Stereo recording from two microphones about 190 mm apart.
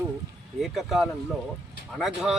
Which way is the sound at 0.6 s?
Centre (ahead or behind).